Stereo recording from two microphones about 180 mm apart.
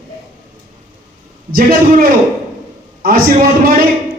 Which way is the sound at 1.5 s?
55° right (ahead or behind).